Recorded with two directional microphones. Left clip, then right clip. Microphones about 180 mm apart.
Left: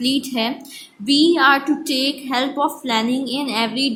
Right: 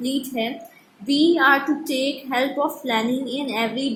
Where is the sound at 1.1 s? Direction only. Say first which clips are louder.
Left 2 dB; 20° left (ahead or behind).